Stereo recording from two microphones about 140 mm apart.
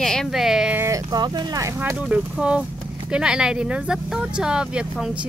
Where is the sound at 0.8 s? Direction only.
25° right (ahead or behind).